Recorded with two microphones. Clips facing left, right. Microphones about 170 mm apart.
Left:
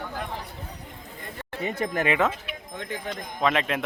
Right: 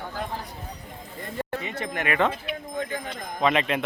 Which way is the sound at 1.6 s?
40° left (ahead or behind).